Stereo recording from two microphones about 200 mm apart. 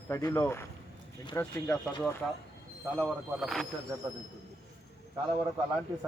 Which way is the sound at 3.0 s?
Centre (ahead or behind).